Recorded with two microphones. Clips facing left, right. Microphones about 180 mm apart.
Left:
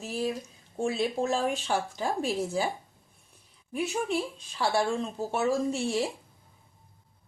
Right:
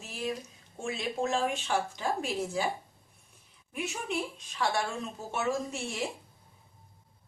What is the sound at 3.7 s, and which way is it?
A woman's voice, 35° left (ahead or behind).